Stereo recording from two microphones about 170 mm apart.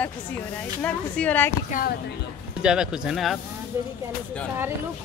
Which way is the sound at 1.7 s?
50° left (ahead or behind).